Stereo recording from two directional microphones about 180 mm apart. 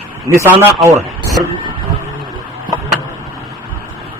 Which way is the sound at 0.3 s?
15° right (ahead or behind).